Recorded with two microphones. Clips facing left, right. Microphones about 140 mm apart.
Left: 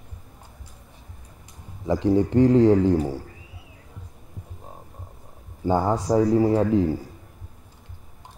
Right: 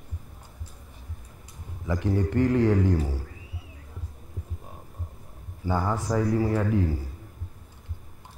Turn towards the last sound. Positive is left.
turn(degrees=15)  # may be behind; listen again after turning